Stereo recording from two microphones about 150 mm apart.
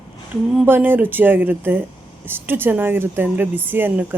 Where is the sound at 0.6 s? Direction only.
15° right (ahead or behind).